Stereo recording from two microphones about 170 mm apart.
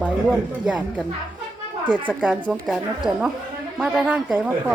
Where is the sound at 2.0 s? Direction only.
10° right (ahead or behind).